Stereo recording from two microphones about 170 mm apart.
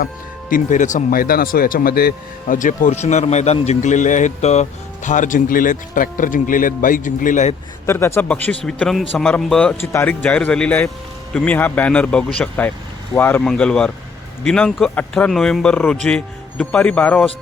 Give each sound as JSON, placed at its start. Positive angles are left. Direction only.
{"t": 0.5, "sound": "speech", "side_deg": 45}
{"t": 7.9, "sound": "speech", "side_deg": 15}
{"t": 9.8, "sound": "a man's voice", "side_deg": 15}